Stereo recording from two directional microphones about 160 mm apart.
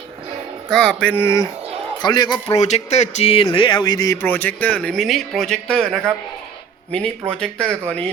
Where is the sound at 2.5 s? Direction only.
45° left (ahead or behind).